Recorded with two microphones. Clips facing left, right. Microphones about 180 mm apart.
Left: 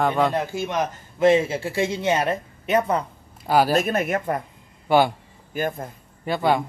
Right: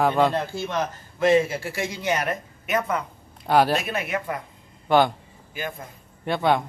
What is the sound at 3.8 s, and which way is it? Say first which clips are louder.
Speech: left 5 dB; 45° left (ahead or behind).